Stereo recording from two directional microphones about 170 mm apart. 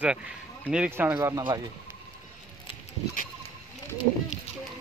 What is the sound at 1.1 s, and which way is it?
Speech, 20° right (ahead or behind).